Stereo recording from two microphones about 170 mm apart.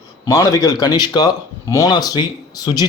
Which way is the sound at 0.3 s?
20° left (ahead or behind).